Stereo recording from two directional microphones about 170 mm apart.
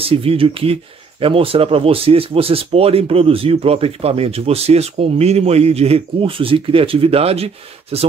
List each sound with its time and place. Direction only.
0.0 s speech: 35° right (ahead or behind)